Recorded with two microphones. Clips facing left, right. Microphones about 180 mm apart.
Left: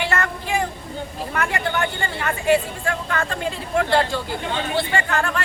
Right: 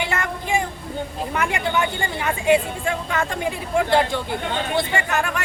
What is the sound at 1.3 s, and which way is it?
Speech, 15° right (ahead or behind).